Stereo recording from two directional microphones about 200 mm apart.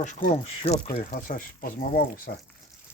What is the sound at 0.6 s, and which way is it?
Speech, 25° left (ahead or behind).